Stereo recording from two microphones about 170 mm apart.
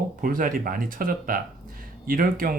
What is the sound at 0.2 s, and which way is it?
Speech, 55° right (ahead or behind).